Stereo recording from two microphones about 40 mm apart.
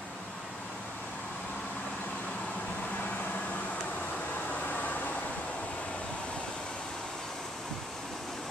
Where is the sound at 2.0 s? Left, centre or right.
Left.